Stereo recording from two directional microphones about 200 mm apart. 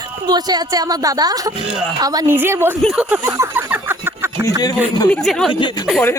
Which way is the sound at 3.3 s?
10° right (ahead or behind).